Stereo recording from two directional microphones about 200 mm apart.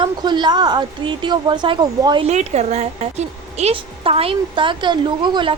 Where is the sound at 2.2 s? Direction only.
35° right (ahead or behind).